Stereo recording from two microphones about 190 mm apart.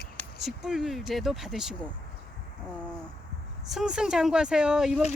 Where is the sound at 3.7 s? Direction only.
5° right (ahead or behind).